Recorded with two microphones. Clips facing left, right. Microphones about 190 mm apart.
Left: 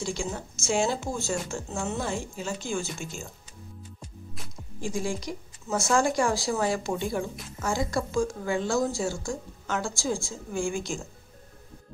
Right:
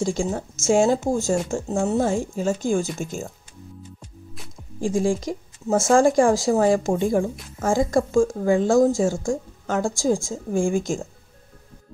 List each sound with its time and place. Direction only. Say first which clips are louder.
0.0 s speech: right 8 dB; 45° right (ahead or behind)
4.8 s speech: right 9 dB; 30° right (ahead or behind)
5.2 s speech: right 8 dB; 45° right (ahead or behind)